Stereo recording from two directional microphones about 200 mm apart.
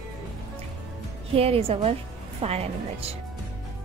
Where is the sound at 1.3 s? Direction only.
30° right (ahead or behind).